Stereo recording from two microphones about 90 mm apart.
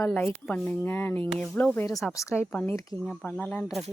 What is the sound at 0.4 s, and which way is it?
Speech, 15° left (ahead or behind).